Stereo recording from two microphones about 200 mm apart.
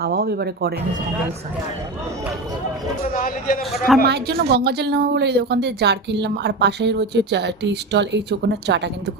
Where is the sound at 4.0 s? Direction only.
55° right (ahead or behind).